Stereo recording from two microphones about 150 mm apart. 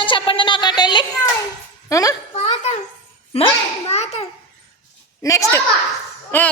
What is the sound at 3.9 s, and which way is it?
Speech, 45° left (ahead or behind).